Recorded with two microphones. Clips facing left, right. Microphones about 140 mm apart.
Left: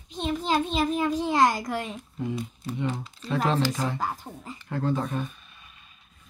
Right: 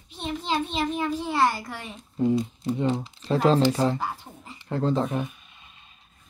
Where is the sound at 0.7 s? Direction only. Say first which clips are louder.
Left 2 dB; 10° left (ahead or behind).